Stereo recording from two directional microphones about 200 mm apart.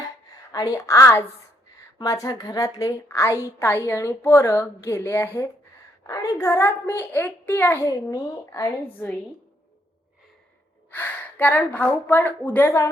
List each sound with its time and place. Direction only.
0.5 s a woman's voice: 20° left (ahead or behind)
10.9 s a woman's voice: 10° left (ahead or behind)